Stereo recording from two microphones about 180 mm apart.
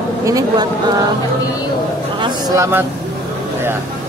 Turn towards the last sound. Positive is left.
turn(degrees=-15)  # may be behind; listen again after turning